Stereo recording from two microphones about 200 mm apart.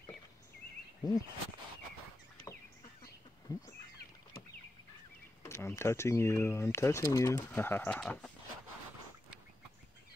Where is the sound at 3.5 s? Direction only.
20° left (ahead or behind).